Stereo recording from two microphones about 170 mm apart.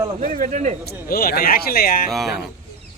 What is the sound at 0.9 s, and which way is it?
Speech, 60° left (ahead or behind).